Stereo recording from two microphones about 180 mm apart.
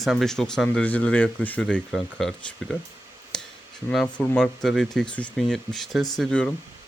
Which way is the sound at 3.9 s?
5° left (ahead or behind).